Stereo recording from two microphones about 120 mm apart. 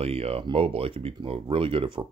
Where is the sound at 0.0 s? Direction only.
55° right (ahead or behind).